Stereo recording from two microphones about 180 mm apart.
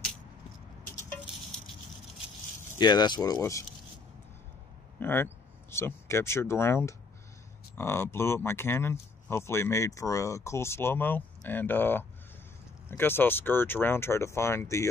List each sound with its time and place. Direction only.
2.7 s speech: 25° left (ahead or behind)
5.0 s speech: 10° left (ahead or behind)